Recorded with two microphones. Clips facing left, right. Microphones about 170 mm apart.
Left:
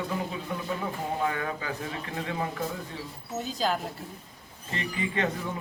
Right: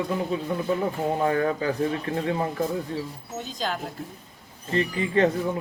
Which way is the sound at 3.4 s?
5° left (ahead or behind).